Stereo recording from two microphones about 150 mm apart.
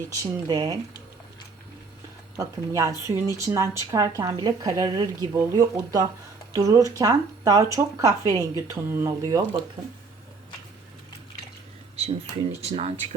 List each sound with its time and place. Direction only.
0.1 s speech: 25° right (ahead or behind)
2.3 s speech: 20° right (ahead or behind)
11.9 s speech: 40° right (ahead or behind)